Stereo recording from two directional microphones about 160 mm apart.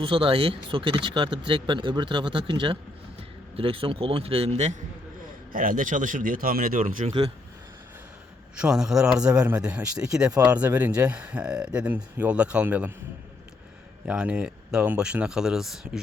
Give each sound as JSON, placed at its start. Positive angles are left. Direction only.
{"t": 0.0, "sound": "a man's voice", "side_deg": -35}
{"t": 5.5, "sound": "speech", "side_deg": -60}
{"t": 8.5, "sound": "speech", "side_deg": -5}
{"t": 14.0, "sound": "speech", "side_deg": -5}